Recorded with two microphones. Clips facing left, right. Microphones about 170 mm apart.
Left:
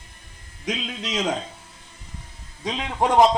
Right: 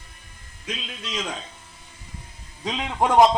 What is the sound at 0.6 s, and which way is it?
Speech, 75° left (ahead or behind).